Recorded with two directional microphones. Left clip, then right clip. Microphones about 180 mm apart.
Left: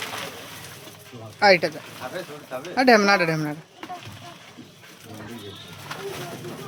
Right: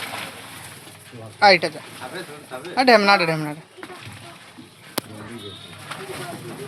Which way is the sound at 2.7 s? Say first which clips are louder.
Right 2 dB; 20° left (ahead or behind).